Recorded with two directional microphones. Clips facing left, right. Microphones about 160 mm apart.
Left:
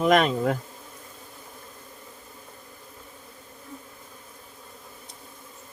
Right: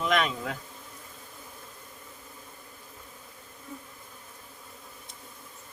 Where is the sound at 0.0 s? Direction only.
50° left (ahead or behind).